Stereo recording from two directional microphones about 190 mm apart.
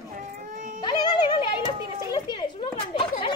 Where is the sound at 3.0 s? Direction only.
25° left (ahead or behind).